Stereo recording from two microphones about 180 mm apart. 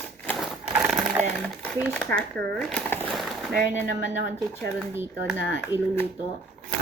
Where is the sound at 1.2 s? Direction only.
40° right (ahead or behind).